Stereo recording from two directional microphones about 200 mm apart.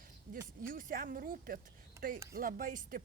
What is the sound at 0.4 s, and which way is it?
A woman's voice, 45° right (ahead or behind).